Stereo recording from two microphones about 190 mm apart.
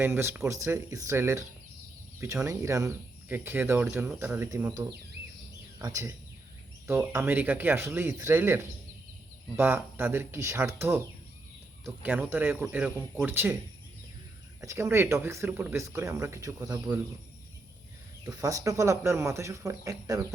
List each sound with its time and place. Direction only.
0.0 s speech: 10° right (ahead or behind)
14.6 s speech: 15° right (ahead or behind)
18.3 s speech: 20° right (ahead or behind)